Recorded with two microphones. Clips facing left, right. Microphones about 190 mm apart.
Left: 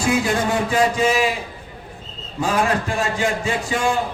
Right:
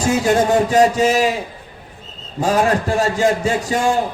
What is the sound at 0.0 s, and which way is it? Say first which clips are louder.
A man's voice: right 4 dB; 40° right (ahead or behind).